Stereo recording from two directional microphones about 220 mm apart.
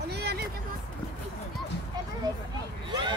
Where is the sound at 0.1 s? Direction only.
50° right (ahead or behind).